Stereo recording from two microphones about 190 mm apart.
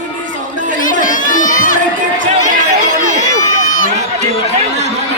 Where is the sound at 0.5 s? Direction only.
40° right (ahead or behind).